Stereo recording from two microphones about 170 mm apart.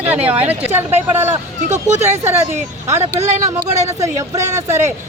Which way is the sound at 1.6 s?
45° right (ahead or behind).